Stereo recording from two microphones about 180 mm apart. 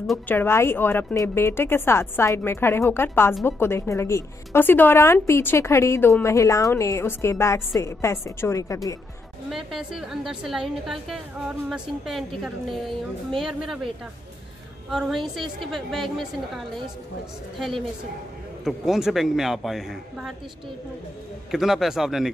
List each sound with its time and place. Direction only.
0.3 s a woman's voice: 10° left (ahead or behind)
9.5 s a woman's voice: centre (ahead or behind)
14.9 s a woman's voice: centre (ahead or behind)
21.5 s a woman's voice: centre (ahead or behind)